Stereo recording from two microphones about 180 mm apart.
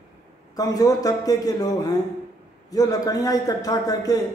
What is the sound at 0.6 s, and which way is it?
A man's voice, 20° left (ahead or behind).